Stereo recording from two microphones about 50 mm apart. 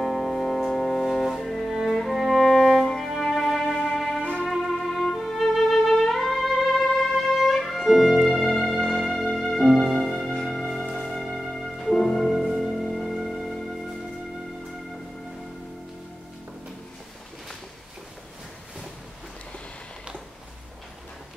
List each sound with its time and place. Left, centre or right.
0.0 s music: centre
4.2 s music: left
4.5 s music: centre
11.9 s music: centre
12.2 s music: centre